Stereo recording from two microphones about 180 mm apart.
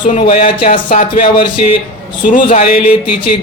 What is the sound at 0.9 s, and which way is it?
Speech, 45° left (ahead or behind).